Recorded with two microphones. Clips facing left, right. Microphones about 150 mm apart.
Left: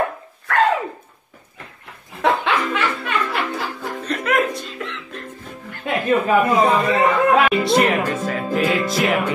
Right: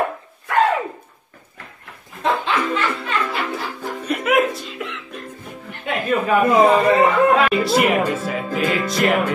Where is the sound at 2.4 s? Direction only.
70° left (ahead or behind).